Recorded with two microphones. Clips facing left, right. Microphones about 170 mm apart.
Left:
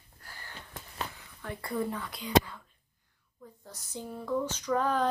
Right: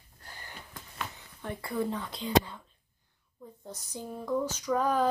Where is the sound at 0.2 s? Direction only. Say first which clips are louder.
Right 1 dB; 20° right (ahead or behind).